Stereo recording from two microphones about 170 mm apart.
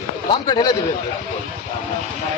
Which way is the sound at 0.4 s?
25° left (ahead or behind).